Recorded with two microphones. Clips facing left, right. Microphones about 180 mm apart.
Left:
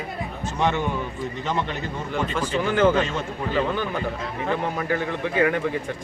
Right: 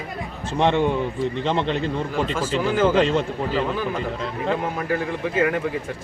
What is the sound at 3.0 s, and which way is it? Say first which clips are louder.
Speech: right 6 dB; 30° right (ahead or behind).